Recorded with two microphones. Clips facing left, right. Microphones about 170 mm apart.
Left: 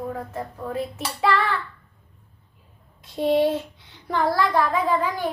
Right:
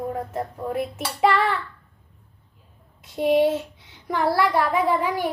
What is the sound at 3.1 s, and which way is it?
Child singing, 10° right (ahead or behind).